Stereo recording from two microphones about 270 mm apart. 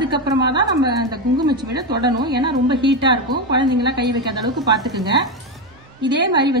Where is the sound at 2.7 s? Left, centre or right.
Right.